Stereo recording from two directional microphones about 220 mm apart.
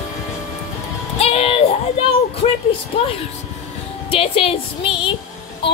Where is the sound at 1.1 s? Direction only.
25° left (ahead or behind).